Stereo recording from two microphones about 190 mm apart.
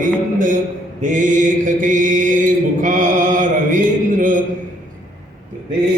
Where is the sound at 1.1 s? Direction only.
40° right (ahead or behind).